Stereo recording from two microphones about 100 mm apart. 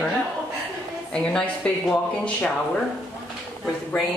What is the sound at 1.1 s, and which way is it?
Speech, 10° left (ahead or behind).